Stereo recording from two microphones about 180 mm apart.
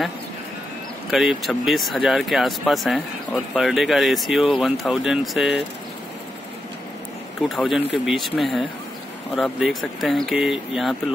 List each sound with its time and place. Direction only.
1.1 s speech: centre (ahead or behind)
7.4 s speech: centre (ahead or behind)